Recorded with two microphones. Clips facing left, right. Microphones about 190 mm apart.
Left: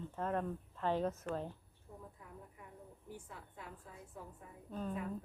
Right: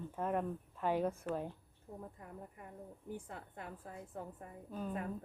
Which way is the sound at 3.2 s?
60° right (ahead or behind).